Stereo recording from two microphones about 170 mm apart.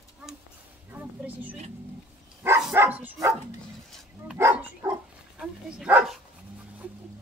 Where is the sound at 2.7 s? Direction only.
10° right (ahead or behind).